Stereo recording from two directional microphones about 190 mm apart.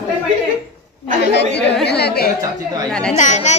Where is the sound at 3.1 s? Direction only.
40° left (ahead or behind).